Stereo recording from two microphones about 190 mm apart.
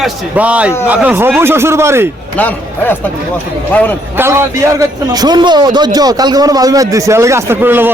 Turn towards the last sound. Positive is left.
turn(degrees=-10)  # may be behind; listen again after turning